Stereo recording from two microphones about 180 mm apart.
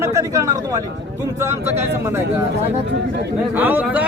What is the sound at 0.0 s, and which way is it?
Speech, 15° right (ahead or behind).